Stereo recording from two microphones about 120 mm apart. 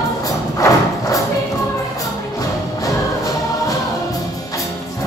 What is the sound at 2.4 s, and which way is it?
Music, 30° left (ahead or behind).